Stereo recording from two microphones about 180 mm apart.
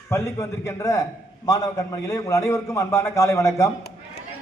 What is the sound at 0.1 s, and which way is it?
A man's voice, 15° left (ahead or behind).